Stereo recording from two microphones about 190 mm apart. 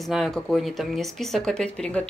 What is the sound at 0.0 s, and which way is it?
Speech, centre (ahead or behind).